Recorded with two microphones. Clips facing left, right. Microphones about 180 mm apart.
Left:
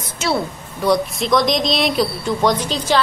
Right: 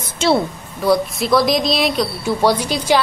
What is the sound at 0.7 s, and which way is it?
A woman's voice, centre (ahead or behind).